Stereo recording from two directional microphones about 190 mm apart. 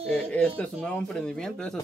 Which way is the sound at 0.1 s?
5° left (ahead or behind).